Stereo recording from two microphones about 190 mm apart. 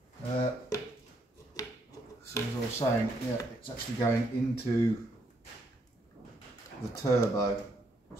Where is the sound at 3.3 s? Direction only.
20° left (ahead or behind).